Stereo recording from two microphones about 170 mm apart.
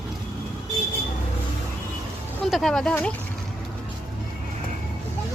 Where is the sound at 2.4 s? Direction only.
Centre (ahead or behind).